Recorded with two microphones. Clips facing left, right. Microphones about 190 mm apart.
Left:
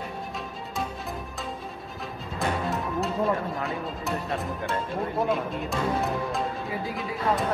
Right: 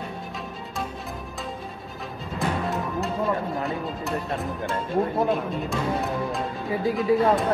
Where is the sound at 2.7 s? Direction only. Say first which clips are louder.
Right 1 dB; centre (ahead or behind).